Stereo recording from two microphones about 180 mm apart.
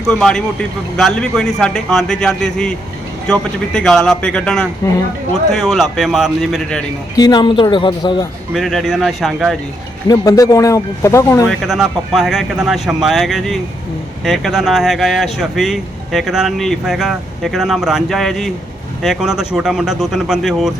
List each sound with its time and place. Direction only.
0.1 s speech: 5° left (ahead or behind)
4.8 s speech: 15° left (ahead or behind)
5.5 s speech: centre (ahead or behind)
7.2 s speech: 25° left (ahead or behind)
8.5 s speech: centre (ahead or behind)
10.1 s speech: 20° left (ahead or behind)
11.4 s speech: centre (ahead or behind)